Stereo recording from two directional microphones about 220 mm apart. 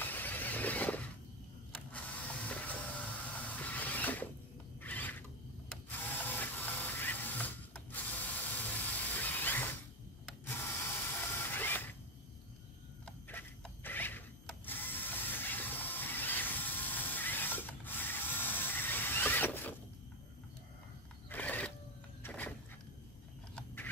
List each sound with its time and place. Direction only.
0.0 s shatter: 10° left (ahead or behind)
1.7 s mechanisms: 5° left (ahead or behind)
9.2 s ratchet: 10° left (ahead or behind)
13.3 s a sound: 10° left (ahead or behind)
14.7 s ratchet: 10° left (ahead or behind)
21.3 s wild animals: 5° left (ahead or behind)
22.2 s music: 5° left (ahead or behind)
23.5 s a sound: 10° left (ahead or behind)